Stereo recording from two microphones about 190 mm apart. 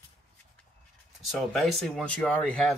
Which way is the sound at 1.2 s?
Centre (ahead or behind).